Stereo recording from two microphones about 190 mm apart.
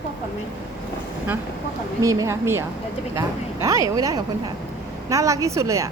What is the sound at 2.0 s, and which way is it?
A woman's voice, 15° right (ahead or behind).